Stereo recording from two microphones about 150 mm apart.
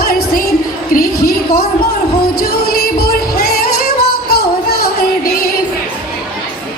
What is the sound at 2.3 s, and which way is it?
Music, 90° left.